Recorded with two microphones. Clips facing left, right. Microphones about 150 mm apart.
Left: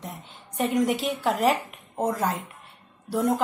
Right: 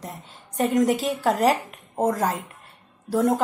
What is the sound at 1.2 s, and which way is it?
A woman's voice, 40° right (ahead or behind).